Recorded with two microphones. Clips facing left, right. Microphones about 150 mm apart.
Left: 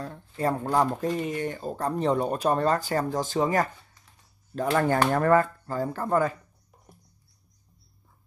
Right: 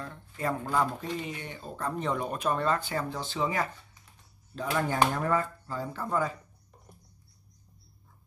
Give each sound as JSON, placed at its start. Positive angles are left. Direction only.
{"t": 0.0, "sound": "speech", "side_deg": 35}